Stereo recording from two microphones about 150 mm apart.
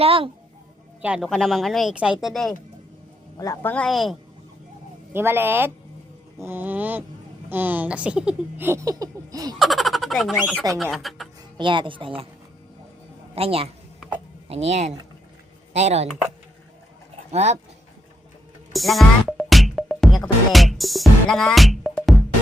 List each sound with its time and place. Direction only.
0.0 s speech: 40° right (ahead or behind)
1.0 s speech: 5° right (ahead or behind)
3.3 s speech: 20° left (ahead or behind); by 4.2 s centre (ahead or behind)
5.1 s speech: 15° right (ahead or behind)
9.6 s speech: centre (ahead or behind)
11.5 s speech: 30° right (ahead or behind)
13.3 s speech: 40° right (ahead or behind)
17.3 s speech: 50° right (ahead or behind)
18.7 s music: centre (ahead or behind)